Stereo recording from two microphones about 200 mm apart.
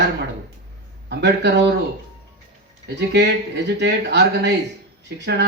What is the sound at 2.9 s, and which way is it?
Speech, 60° right (ahead or behind).